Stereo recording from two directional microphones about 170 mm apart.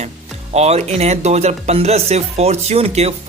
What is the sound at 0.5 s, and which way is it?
Speech, 40° right (ahead or behind).